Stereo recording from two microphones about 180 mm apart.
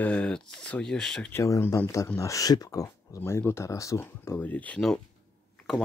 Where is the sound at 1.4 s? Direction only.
15° left (ahead or behind).